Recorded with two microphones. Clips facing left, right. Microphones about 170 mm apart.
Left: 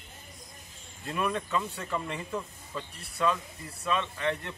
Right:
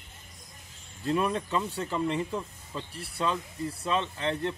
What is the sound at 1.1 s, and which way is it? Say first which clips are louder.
Speech: right 3 dB; 30° right (ahead or behind).